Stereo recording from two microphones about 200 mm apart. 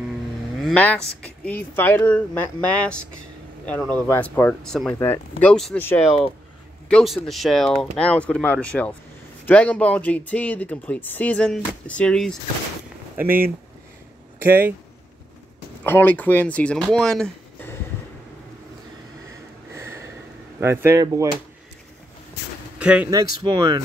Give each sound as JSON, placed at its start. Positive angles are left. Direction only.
{"t": 0.6, "sound": "speech", "side_deg": 5}
{"t": 13.2, "sound": "speech", "side_deg": -10}
{"t": 15.8, "sound": "speech", "side_deg": 10}
{"t": 19.7, "sound": "a sound", "side_deg": -15}
{"t": 20.6, "sound": "speech", "side_deg": -10}
{"t": 22.8, "sound": "speech", "side_deg": -5}
{"t": 23.4, "sound": "speech", "side_deg": -20}